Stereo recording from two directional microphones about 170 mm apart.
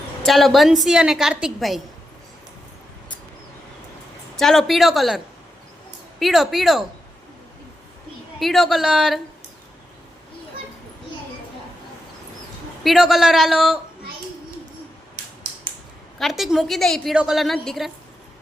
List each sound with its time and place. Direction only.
0.2 s a woman's voice: centre (ahead or behind)
4.4 s a woman's voice: centre (ahead or behind)
8.4 s a woman's voice: centre (ahead or behind)
12.8 s a woman's voice: centre (ahead or behind)
16.1 s a woman's voice: centre (ahead or behind)